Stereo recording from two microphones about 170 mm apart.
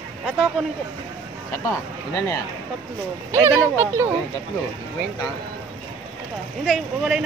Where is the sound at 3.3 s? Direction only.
15° right (ahead or behind).